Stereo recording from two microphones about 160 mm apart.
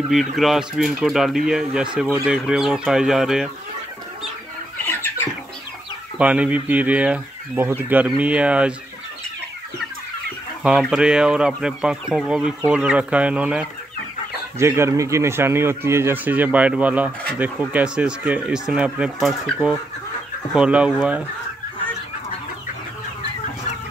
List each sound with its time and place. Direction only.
0.1 s speech: centre (ahead or behind)
4.8 s chicken: 15° left (ahead or behind)
6.1 s speech: 10° right (ahead or behind)
10.6 s speech: 5° right (ahead or behind)